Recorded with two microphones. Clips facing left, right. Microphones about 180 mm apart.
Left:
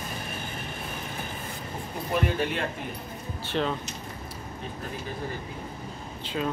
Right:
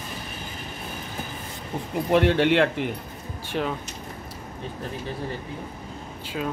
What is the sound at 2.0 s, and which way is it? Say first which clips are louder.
Speech: right 8 dB; 75° right (ahead or behind).